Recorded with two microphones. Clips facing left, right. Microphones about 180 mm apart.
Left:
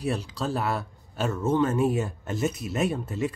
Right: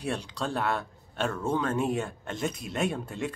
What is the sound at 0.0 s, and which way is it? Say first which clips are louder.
Speech: left 3 dB; 5° left (ahead or behind).